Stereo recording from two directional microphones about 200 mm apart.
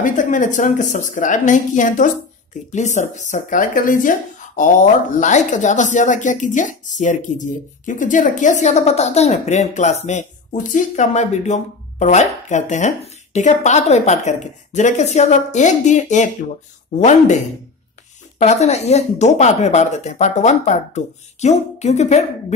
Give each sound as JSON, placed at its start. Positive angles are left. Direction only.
{"t": 0.0, "sound": "speech", "side_deg": 40}
{"t": 5.2, "sound": "speech", "side_deg": 35}
{"t": 18.4, "sound": "speech", "side_deg": 35}